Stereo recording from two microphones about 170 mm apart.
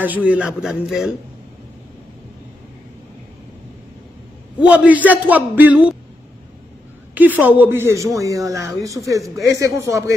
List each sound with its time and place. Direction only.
0.0 s a man's voice: 10° right (ahead or behind)
4.6 s a man's voice: 5° right (ahead or behind)
7.2 s a man's voice: 10° right (ahead or behind)